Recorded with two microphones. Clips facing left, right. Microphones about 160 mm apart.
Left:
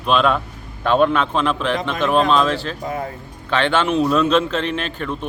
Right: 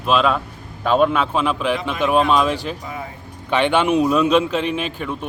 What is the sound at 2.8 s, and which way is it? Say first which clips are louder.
Speech: left 5 dB; 45° left (ahead or behind).